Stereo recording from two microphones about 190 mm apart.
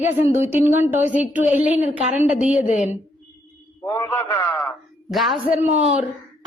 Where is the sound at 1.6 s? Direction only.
40° left (ahead or behind).